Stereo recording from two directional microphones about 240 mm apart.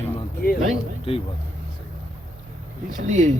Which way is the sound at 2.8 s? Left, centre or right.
Right.